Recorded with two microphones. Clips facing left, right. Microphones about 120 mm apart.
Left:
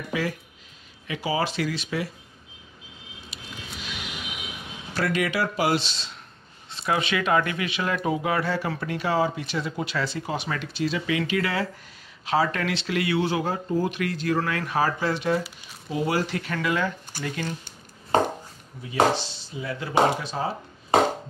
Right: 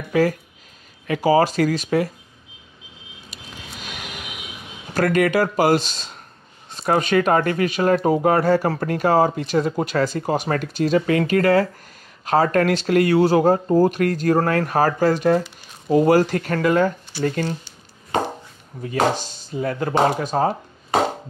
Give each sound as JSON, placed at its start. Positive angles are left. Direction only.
{"t": 0.1, "sound": "speech", "side_deg": -45}
{"t": 3.3, "sound": "vehicle", "side_deg": -45}
{"t": 4.9, "sound": "speech", "side_deg": -50}
{"t": 18.8, "sound": "speech", "side_deg": -45}